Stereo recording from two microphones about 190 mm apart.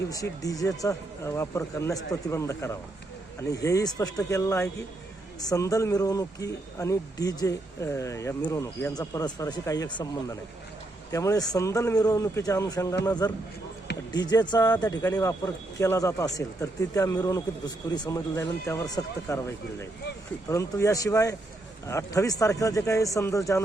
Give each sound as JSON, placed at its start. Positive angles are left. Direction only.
{"t": 0.1, "sound": "speech", "side_deg": 20}
{"t": 20.5, "sound": "speech", "side_deg": 15}